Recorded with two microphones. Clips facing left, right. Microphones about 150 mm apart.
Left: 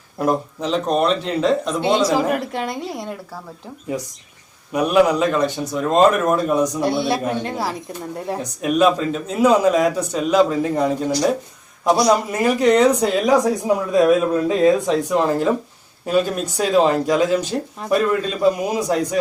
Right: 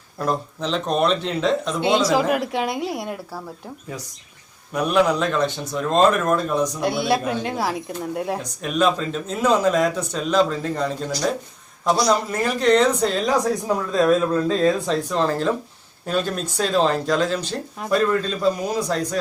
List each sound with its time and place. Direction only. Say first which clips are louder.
0.2 s speech: left 4 dB; 10° left (ahead or behind); by 3.2 s 5° right (ahead or behind)
4.7 s speech: left 3 dB; 5° left (ahead or behind)
6.8 s a man's voice: left 1 dB; centre (ahead or behind); by 19.0 s 15° left (ahead or behind)